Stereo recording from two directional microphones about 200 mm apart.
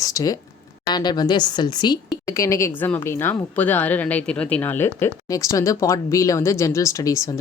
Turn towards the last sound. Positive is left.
turn(degrees=15)  # may be behind; listen again after turning